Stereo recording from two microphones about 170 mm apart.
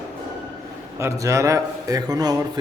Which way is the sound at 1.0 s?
20° right (ahead or behind).